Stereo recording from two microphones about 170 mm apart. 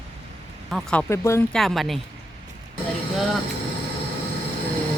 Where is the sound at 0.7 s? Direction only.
5° left (ahead or behind).